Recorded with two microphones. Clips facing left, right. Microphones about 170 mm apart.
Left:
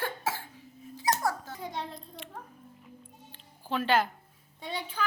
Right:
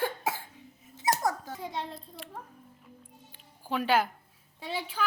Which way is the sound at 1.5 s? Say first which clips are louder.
Right 1 dB; centre (ahead or behind).